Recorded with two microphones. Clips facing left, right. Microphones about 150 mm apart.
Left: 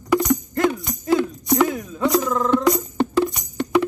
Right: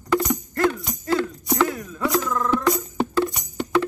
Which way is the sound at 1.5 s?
20° left (ahead or behind).